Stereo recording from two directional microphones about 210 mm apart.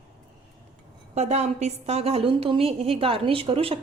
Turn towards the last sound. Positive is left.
turn(degrees=-25)  # may be behind; listen again after turning